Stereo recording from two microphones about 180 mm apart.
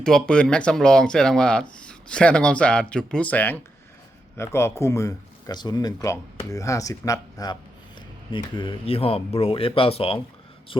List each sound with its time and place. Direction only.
0.0 s speech: 5° left (ahead or behind); by 10.2 s 30° left (ahead or behind)